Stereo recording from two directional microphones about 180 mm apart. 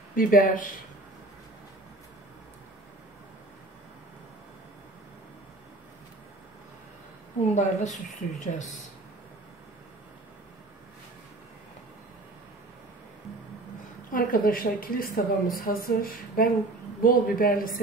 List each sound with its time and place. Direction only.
0.1 s speech: 50° left (ahead or behind)
7.5 s speech: 45° left (ahead or behind)
14.1 s speech: 50° left (ahead or behind)